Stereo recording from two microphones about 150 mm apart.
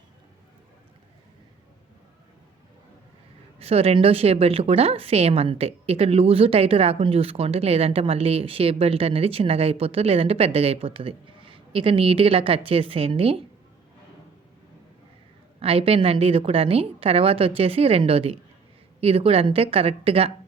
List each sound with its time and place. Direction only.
3.6 s a woman's voice: 40° right (ahead or behind)
15.6 s a woman's voice: 40° right (ahead or behind)